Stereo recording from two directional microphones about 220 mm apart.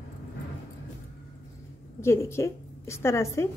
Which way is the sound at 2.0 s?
10° left (ahead or behind).